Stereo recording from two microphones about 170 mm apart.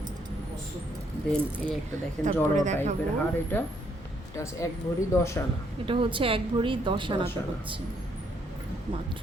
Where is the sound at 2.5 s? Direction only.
45° right (ahead or behind).